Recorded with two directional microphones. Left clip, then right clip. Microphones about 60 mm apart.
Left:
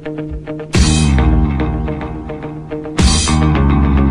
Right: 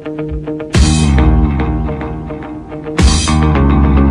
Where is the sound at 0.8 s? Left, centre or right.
Centre.